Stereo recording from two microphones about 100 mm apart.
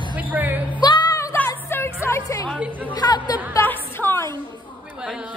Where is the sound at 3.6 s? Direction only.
25° left (ahead or behind).